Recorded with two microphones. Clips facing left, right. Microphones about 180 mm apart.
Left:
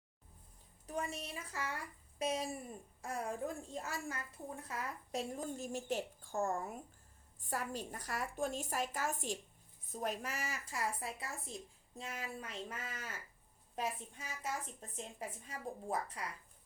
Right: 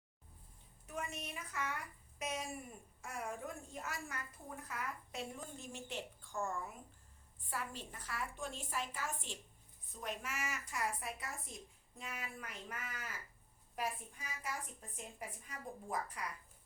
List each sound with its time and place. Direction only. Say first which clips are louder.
0.9 s a woman's voice: left 3 dB; 35° left (ahead or behind)